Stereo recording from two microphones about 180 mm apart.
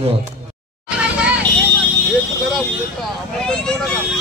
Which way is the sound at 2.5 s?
5° left (ahead or behind).